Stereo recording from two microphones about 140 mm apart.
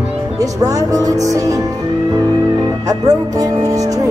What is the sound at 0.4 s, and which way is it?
Music, 25° right (ahead or behind).